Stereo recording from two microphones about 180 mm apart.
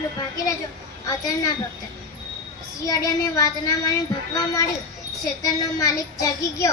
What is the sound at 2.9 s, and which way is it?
Speech, 20° left (ahead or behind).